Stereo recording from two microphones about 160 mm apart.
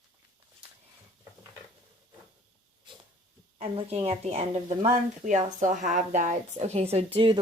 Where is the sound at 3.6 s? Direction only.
40° right (ahead or behind).